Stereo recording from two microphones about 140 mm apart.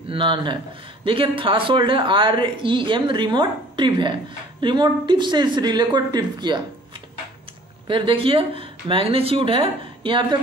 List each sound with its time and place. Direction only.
0.1 s speech: 35° right (ahead or behind)
7.9 s speech: 40° right (ahead or behind)